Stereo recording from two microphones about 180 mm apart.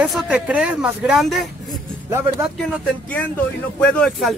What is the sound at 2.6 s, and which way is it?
Speech, 5° left (ahead or behind).